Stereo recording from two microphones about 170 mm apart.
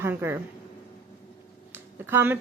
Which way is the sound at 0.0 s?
15° right (ahead or behind).